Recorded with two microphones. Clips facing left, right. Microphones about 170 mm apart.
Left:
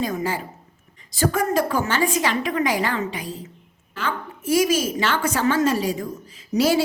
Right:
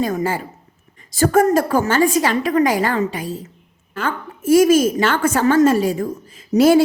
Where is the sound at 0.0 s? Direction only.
50° right (ahead or behind).